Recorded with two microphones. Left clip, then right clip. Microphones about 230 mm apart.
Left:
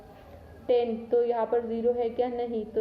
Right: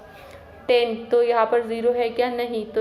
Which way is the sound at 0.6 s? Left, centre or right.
Centre.